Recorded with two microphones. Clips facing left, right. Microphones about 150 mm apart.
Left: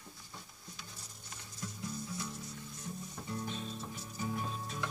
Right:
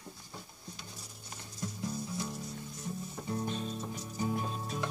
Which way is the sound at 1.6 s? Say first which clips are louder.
Right 5 dB; 25° right (ahead or behind).